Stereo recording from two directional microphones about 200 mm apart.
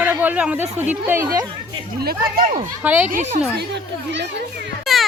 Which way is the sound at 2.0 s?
50° right (ahead or behind).